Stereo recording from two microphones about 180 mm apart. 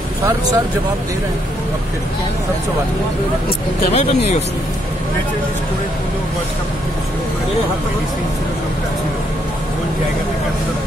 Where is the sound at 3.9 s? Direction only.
40° left (ahead or behind).